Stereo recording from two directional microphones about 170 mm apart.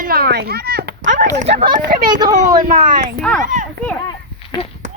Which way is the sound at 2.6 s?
50° right (ahead or behind).